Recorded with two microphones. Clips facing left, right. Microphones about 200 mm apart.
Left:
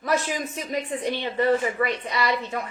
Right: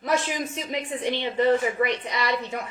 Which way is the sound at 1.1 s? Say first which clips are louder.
Right 1 dB; 20° right (ahead or behind).